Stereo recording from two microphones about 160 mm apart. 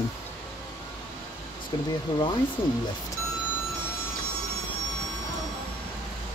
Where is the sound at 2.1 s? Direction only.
30° left (ahead or behind).